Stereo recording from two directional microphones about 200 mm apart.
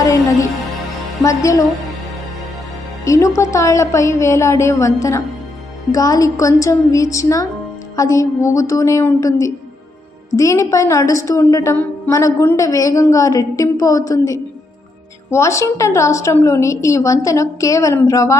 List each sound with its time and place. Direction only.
0.0 s music: 15° left (ahead or behind)
1.2 s a woman's voice: 15° left (ahead or behind)
3.0 s a woman's voice: 15° left (ahead or behind)